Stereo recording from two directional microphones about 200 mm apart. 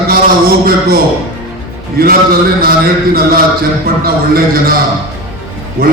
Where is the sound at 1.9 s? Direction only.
50° right (ahead or behind).